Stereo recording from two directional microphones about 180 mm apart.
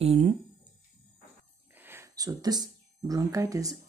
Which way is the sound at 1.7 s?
10° right (ahead or behind).